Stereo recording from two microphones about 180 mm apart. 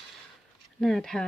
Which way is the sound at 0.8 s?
Centre (ahead or behind).